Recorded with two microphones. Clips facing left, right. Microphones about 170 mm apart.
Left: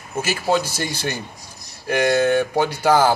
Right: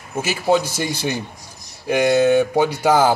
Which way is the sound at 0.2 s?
15° right (ahead or behind).